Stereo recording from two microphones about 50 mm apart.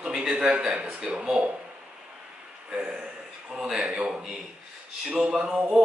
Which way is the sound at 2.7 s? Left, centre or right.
Centre.